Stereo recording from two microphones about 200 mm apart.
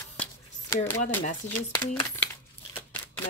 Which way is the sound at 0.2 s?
10° left (ahead or behind).